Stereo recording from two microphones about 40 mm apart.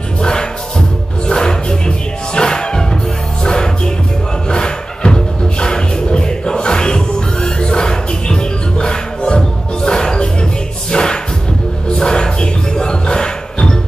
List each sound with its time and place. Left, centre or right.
0.2 s music: centre